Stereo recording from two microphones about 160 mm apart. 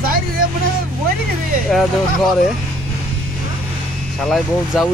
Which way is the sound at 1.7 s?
Centre (ahead or behind).